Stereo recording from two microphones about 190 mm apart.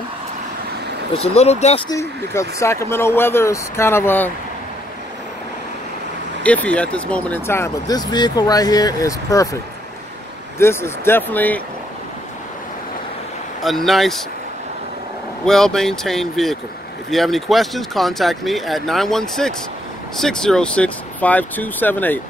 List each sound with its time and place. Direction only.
1.1 s speech: 30° left (ahead or behind)
1.9 s speech: 15° left (ahead or behind)
6.4 s speech: 5° left (ahead or behind)
10.6 s speech: 15° left (ahead or behind)
13.6 s speech: centre (ahead or behind)
15.4 s speech: 5° left (ahead or behind)